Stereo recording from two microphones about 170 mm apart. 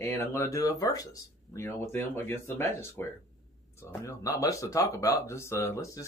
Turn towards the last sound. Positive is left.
turn(degrees=15)  # may be behind; listen again after turning